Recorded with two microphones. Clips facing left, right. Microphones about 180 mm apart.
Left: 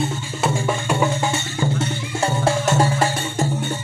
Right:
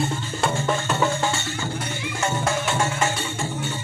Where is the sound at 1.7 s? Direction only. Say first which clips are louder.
Left 5 dB; 30° left (ahead or behind).